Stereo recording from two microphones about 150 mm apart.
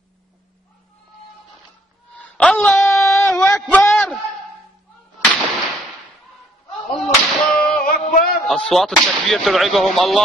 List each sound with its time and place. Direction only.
2.1 s a sound: 10° left (ahead or behind)
5.2 s whip: 10° left (ahead or behind)
6.9 s whip: centre (ahead or behind)
7.7 s music: 65° left (ahead or behind)
8.5 s speech: 5° left (ahead or behind)